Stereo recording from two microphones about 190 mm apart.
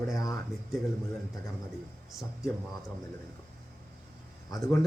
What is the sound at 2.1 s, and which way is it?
Speech, centre (ahead or behind).